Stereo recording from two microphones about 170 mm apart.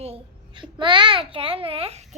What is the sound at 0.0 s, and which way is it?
Babbling, 30° right (ahead or behind).